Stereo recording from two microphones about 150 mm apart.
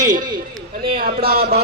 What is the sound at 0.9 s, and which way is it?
Speech, 85° right.